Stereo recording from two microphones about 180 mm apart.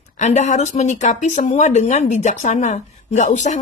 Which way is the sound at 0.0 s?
40° left (ahead or behind).